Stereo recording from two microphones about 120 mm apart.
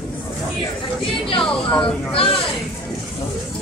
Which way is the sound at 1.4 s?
10° left (ahead or behind).